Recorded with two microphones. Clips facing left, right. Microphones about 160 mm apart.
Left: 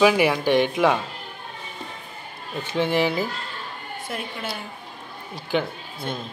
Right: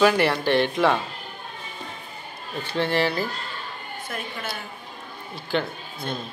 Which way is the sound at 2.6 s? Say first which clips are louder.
Left 1 dB; 15° left (ahead or behind).